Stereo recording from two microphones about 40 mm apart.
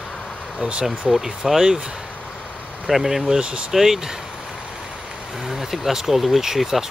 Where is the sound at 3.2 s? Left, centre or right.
Centre.